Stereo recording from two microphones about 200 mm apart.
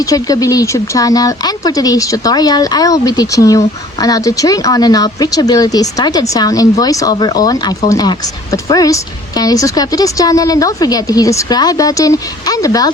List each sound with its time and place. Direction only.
0.1 s speech: 20° left (ahead or behind)